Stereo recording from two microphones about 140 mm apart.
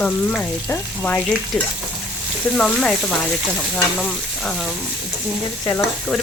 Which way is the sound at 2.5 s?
5° left (ahead or behind).